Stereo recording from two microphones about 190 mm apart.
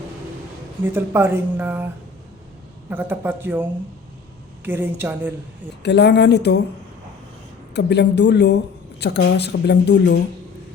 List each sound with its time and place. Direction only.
0.9 s speech: 10° right (ahead or behind)
2.9 s speech: 10° right (ahead or behind)
5.8 s a woman's voice: 65° left (ahead or behind)
7.7 s a woman's voice: 65° left (ahead or behind)